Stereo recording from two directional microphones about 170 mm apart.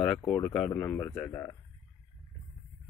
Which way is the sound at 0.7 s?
15° left (ahead or behind).